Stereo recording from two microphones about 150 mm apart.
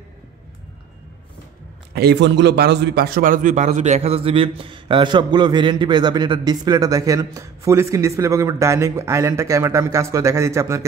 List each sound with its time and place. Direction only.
2.0 s a man's voice: 90° right; by 10.9 s 20° right (ahead or behind)